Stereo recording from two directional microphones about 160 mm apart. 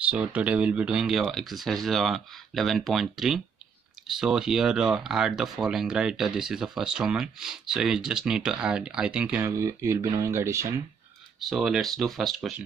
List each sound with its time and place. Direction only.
0.0 s speech: 10° right (ahead or behind)
9.4 s speech: 20° right (ahead or behind)
11.3 s speech: centre (ahead or behind)